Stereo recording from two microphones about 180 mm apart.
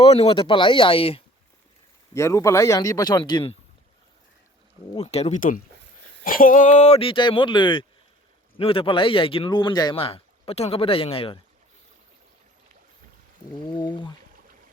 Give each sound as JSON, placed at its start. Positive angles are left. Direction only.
{"t": 0.0, "sound": "speech", "side_deg": 35}
{"t": 2.1, "sound": "speech", "side_deg": 15}
{"t": 4.9, "sound": "speech", "side_deg": 35}
{"t": 13.6, "sound": "speech", "side_deg": 25}